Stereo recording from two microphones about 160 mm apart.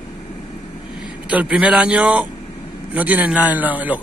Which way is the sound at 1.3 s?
5° right (ahead or behind).